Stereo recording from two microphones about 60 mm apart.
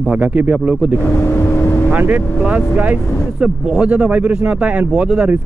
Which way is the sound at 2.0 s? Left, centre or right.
Right.